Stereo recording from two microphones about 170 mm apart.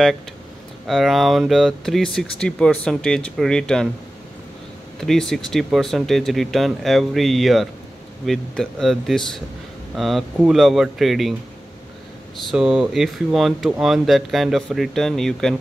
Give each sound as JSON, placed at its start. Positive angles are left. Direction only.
{"t": 0.8, "sound": "speech", "side_deg": 0}
{"t": 5.0, "sound": "speech", "side_deg": 5}
{"t": 12.4, "sound": "speech", "side_deg": -5}